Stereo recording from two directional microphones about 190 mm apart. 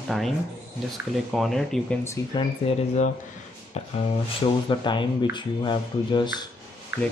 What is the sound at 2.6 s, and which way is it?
Speech, 35° left (ahead or behind).